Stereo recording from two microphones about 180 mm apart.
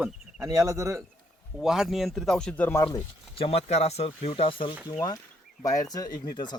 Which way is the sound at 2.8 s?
30° left (ahead or behind).